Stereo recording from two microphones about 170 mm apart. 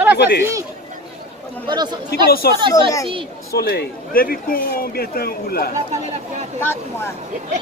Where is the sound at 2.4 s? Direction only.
65° left (ahead or behind).